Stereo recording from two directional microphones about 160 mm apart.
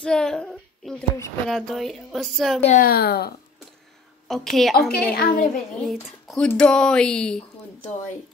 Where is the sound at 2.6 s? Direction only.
55° left (ahead or behind); by 3.3 s 75° left (ahead or behind).